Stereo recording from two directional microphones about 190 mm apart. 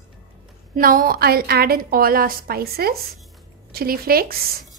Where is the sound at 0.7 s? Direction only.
50° right (ahead or behind).